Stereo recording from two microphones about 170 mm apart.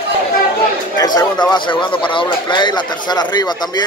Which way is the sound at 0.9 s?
25° left (ahead or behind).